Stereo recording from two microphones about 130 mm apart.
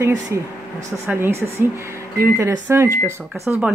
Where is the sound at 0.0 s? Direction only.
20° right (ahead or behind).